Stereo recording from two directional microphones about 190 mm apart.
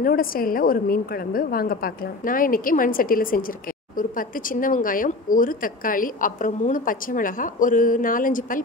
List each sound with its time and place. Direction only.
0.0 s a woman's voice: 50° left (ahead or behind)